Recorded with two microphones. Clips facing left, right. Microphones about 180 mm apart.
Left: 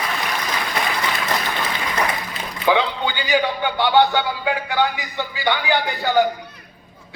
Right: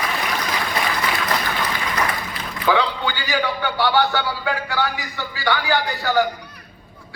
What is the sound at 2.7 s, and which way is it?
A man's voice, 20° left (ahead or behind).